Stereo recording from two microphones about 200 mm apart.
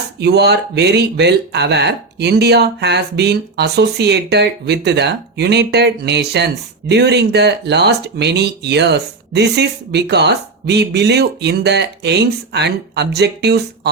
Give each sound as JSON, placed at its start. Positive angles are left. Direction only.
{"t": 0.2, "sound": "speech", "side_deg": -55}